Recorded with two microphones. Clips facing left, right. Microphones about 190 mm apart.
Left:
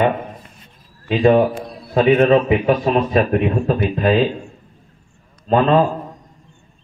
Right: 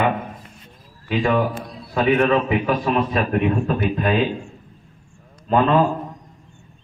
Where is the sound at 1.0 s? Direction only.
25° left (ahead or behind).